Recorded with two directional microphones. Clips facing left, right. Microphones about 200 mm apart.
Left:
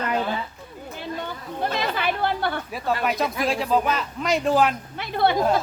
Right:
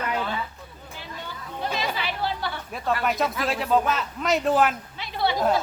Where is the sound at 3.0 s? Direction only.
Centre (ahead or behind).